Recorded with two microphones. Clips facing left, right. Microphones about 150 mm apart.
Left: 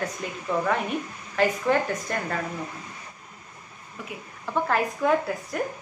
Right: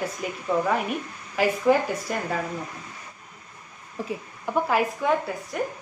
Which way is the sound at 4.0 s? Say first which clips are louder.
Right 8 dB; 30° right (ahead or behind).